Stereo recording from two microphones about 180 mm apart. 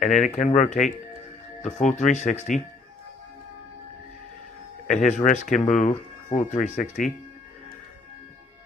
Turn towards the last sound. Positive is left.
turn(degrees=45)  # may be behind; listen again after turning